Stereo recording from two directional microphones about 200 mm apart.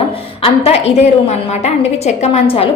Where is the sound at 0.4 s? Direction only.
30° left (ahead or behind).